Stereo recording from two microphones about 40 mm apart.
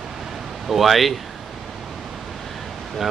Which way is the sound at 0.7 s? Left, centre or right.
Centre.